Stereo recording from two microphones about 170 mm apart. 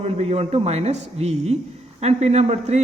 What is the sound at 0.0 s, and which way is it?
A woman's voice, 40° right (ahead or behind).